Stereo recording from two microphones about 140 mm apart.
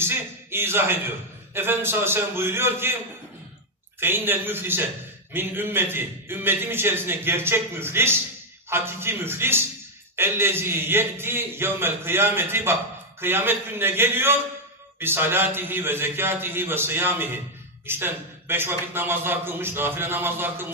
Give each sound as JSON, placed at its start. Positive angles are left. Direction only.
{"t": 0.0, "sound": "a man's voice", "side_deg": -15}
{"t": 4.0, "sound": "a man's voice", "side_deg": -15}